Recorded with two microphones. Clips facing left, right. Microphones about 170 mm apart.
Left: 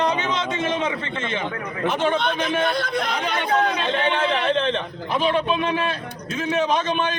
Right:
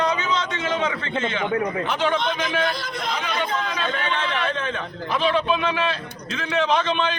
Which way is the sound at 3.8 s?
25° left (ahead or behind).